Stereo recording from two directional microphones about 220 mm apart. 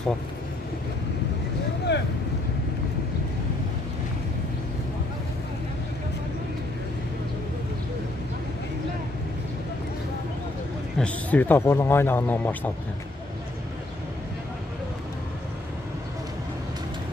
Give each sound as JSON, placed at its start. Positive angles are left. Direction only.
{"t": 1.9, "sound": "speech", "side_deg": 50}
{"t": 11.0, "sound": "speech", "side_deg": 5}